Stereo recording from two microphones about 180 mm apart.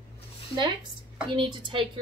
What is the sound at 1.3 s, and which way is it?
Speech, 30° right (ahead or behind).